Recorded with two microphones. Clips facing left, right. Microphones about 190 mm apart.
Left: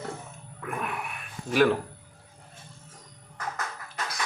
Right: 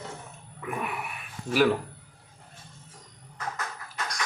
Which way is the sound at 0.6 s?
5° right (ahead or behind).